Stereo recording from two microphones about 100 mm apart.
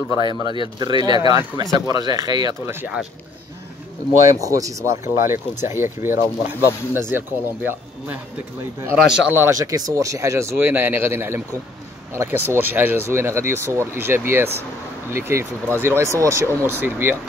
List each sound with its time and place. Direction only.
0.1 s speech: 45° right (ahead or behind)
2.6 s speech: 20° right (ahead or behind)
4.4 s speech: 35° right (ahead or behind)
8.9 s speech: 5° right (ahead or behind)
9.5 s speech: 35° right (ahead or behind)